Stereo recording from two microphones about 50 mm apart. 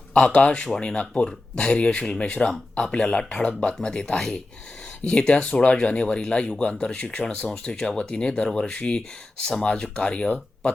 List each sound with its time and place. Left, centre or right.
0.1 s speech: left